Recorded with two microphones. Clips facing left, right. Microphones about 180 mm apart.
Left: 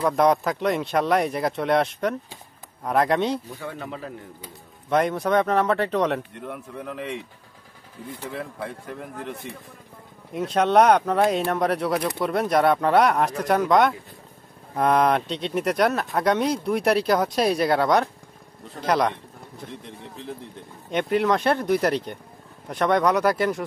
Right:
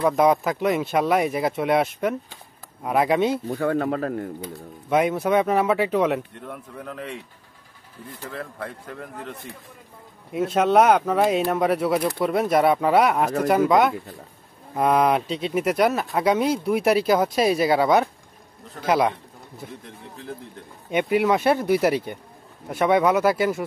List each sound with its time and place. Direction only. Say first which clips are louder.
0.0 s speech: right 1 dB; centre (ahead or behind)
3.4 s speech: right 11 dB; 60° right (ahead or behind)
4.8 s speech: right 1 dB; 5° right (ahead or behind)
8.2 s speech: left 1 dB; 5° left (ahead or behind)
10.3 s speech: right 1 dB; 5° right (ahead or behind)
20.9 s speech: right 2 dB; 10° right (ahead or behind)